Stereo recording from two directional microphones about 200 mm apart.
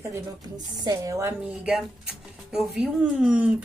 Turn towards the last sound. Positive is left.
turn(degrees=-5)  # may be behind; listen again after turning